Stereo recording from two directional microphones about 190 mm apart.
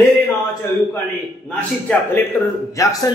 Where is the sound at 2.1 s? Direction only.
10° left (ahead or behind).